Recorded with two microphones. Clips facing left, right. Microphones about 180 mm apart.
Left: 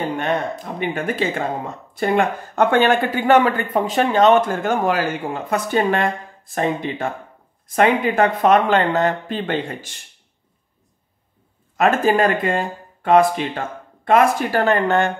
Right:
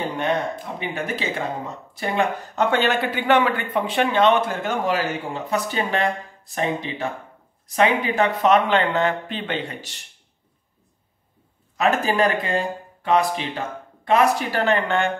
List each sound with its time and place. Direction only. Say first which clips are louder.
0.7 s a man's voice: left 8 dB; 55° left (ahead or behind)
11.7 s a man's voice: left 4 dB; 50° left (ahead or behind)